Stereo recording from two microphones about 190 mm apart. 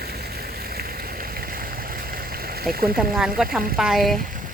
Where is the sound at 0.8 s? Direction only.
50° right (ahead or behind).